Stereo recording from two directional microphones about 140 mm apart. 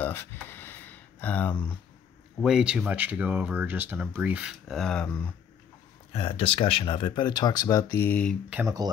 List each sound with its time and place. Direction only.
0.0 s a sound: 15° left (ahead or behind)
2.4 s speech: 5° right (ahead or behind)
6.1 s speech: 40° left (ahead or behind); by 8.4 s 10° left (ahead or behind)